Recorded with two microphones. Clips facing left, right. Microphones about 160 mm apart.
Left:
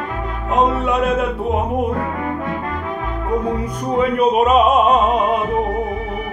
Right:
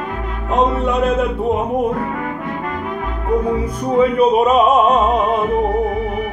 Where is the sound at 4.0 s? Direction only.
Centre (ahead or behind).